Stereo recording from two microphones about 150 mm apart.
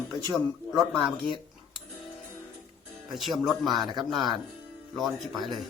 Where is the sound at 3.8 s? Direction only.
30° right (ahead or behind).